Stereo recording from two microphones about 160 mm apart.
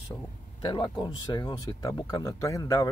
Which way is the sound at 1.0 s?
30° left (ahead or behind).